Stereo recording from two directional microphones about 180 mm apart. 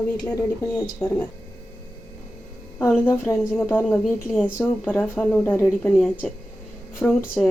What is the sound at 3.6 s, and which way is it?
A woman's voice, 10° left (ahead or behind).